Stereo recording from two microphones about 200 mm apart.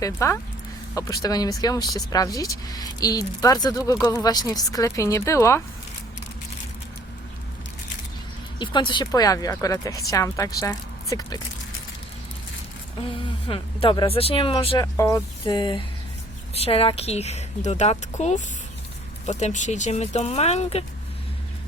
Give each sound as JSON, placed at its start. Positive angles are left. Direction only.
{"t": 0.0, "sound": "speech", "side_deg": 15}
{"t": 8.5, "sound": "speech", "side_deg": 25}
{"t": 13.0, "sound": "speech", "side_deg": 25}
{"t": 14.9, "sound": "a woman's voice", "side_deg": 15}